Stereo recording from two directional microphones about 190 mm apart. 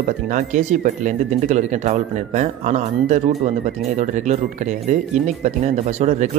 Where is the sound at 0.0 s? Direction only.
40° right (ahead or behind).